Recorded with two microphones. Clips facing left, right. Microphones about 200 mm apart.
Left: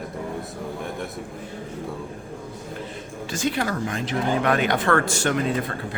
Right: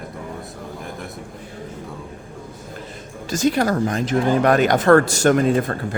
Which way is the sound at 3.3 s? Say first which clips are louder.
Right 7 dB; 40° right (ahead or behind).